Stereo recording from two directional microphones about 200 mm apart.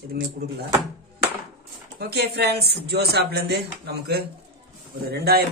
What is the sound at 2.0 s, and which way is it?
Speech, 55° right (ahead or behind).